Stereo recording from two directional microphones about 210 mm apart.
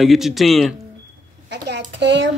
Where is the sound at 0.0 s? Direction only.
Centre (ahead or behind).